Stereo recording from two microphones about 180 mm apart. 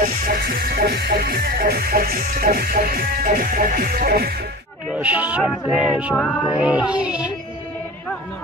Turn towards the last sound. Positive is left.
turn(degrees=-5)  # may be behind; listen again after turning